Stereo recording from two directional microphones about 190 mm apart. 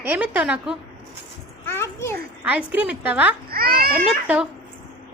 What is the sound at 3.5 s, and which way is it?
Speech, 50° right (ahead or behind).